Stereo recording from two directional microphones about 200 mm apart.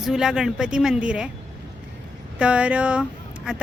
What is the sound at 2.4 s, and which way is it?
Speech, 5° right (ahead or behind).